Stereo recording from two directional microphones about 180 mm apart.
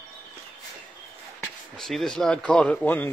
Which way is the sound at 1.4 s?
Centre (ahead or behind).